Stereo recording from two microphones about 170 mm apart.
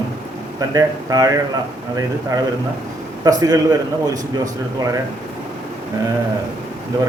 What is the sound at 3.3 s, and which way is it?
Speech, 20° right (ahead or behind).